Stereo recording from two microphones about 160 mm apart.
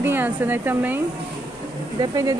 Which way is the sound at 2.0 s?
20° right (ahead or behind).